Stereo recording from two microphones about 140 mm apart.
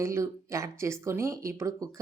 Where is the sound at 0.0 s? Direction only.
20° right (ahead or behind).